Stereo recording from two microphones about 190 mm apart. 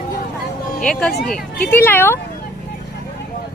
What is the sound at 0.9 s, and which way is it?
A woman's voice, 5° left (ahead or behind).